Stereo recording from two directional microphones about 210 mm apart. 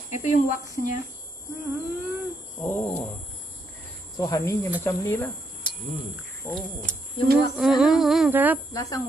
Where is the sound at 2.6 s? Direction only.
10° left (ahead or behind).